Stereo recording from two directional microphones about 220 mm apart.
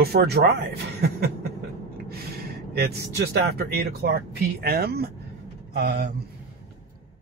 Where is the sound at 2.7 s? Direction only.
45° right (ahead or behind).